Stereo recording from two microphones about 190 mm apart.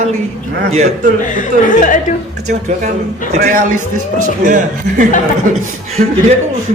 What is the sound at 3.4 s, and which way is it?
A man's voice, 50° right (ahead or behind).